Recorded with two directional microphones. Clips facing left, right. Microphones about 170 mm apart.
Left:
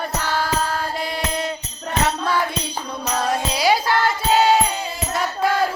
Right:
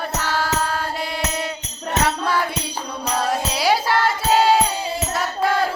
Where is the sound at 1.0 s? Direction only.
5° right (ahead or behind).